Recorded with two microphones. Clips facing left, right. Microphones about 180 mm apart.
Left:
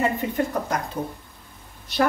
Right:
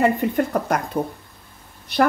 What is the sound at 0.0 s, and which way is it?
Speech, 55° right (ahead or behind).